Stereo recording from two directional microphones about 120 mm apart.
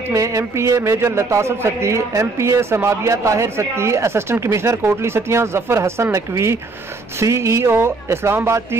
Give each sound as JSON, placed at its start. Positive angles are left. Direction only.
{"t": 0.1, "sound": "a man's voice", "side_deg": -25}